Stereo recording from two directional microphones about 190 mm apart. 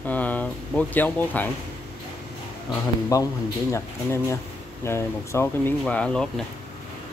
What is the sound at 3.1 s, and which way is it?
Speech, 15° left (ahead or behind).